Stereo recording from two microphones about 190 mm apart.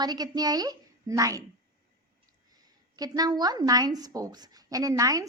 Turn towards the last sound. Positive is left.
turn(degrees=-15)  # may be behind; listen again after turning